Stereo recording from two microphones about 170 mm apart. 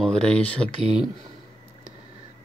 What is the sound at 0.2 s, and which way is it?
Speech, 5° left (ahead or behind).